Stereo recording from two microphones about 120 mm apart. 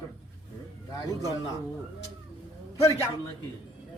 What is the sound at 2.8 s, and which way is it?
Speech, 25° left (ahead or behind).